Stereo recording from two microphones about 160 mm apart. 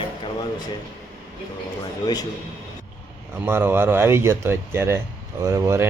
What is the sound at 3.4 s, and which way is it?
Speech, 15° right (ahead or behind).